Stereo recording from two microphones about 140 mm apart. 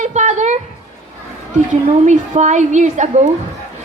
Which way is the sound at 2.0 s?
55° right (ahead or behind).